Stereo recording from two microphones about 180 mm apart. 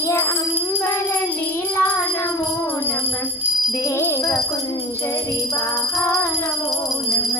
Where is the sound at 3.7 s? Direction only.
15° left (ahead or behind).